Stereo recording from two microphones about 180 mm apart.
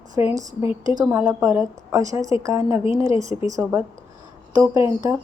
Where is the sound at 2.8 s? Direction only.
30° left (ahead or behind).